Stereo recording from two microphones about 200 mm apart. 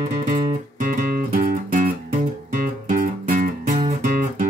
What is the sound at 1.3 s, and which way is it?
Music, 40° right (ahead or behind).